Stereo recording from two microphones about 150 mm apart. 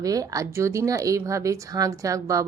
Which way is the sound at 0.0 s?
25° right (ahead or behind).